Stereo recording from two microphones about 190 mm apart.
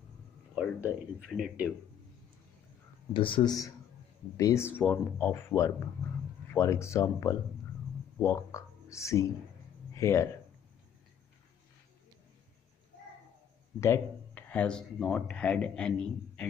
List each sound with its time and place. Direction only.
0.6 s speech: 5° right (ahead or behind)
3.1 s speech: 25° left (ahead or behind)
13.7 s speech: 15° left (ahead or behind)